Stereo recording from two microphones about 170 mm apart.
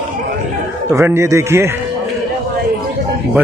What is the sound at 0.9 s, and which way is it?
Speech, 15° right (ahead or behind).